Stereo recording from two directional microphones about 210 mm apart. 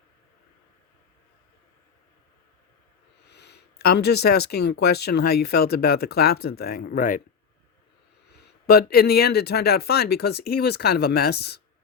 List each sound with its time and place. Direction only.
3.2 s speech: 55° left (ahead or behind)
8.3 s speech: 50° left (ahead or behind)